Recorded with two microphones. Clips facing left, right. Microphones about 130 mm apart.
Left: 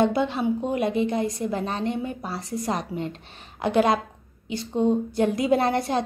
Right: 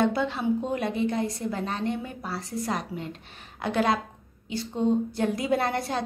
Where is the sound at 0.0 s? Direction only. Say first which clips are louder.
Left 3 dB; 20° left (ahead or behind).